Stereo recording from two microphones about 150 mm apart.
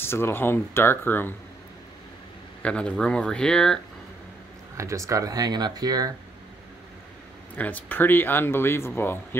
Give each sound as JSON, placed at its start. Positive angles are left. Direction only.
{"t": 0.0, "sound": "speech", "side_deg": 15}
{"t": 2.6, "sound": "speech", "side_deg": 5}
{"t": 4.7, "sound": "speech", "side_deg": -20}
{"t": 7.5, "sound": "speech", "side_deg": 10}